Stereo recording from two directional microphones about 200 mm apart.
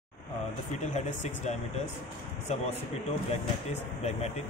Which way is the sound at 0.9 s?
35° left (ahead or behind).